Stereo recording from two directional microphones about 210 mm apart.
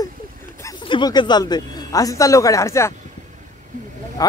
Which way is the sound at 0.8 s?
20° left (ahead or behind).